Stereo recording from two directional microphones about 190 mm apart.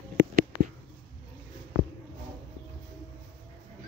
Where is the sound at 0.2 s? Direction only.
50° right (ahead or behind).